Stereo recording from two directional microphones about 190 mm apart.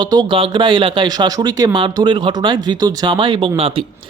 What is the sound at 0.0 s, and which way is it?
Speech, 25° right (ahead or behind).